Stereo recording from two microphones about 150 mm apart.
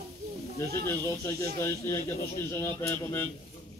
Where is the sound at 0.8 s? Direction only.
20° left (ahead or behind).